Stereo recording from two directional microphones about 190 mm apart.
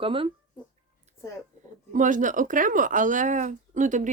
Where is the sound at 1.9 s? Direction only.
45° right (ahead or behind).